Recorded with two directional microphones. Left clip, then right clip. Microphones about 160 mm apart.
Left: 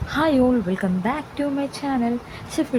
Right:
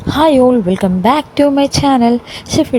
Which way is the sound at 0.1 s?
25° right (ahead or behind).